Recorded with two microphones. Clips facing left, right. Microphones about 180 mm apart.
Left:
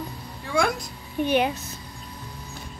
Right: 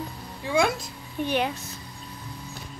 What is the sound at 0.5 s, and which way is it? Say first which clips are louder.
Speech: right 1 dB; 20° right (ahead or behind).